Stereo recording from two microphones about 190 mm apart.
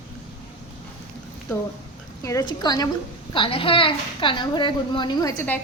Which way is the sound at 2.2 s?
20° left (ahead or behind).